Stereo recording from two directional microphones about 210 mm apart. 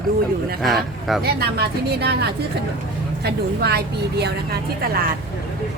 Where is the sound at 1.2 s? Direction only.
50° right (ahead or behind).